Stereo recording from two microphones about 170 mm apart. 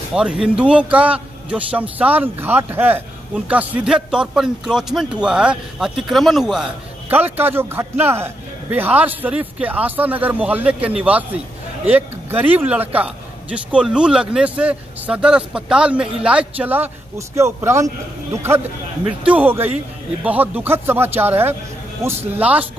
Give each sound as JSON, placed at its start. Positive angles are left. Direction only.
{"t": 0.1, "sound": "a man's voice", "side_deg": -5}